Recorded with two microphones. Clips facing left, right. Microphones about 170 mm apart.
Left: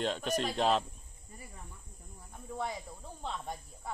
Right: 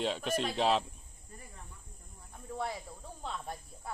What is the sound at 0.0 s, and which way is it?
Speech, centre (ahead or behind).